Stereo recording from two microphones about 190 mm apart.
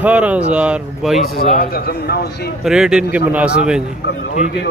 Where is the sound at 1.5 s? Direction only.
55° left (ahead or behind).